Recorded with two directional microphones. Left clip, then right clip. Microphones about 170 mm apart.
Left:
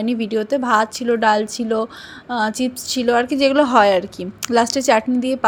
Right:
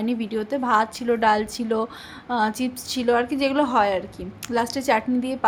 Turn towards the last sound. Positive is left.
turn(degrees=25)  # may be behind; listen again after turning